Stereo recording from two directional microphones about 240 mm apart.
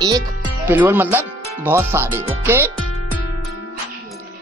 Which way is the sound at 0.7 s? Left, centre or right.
Centre.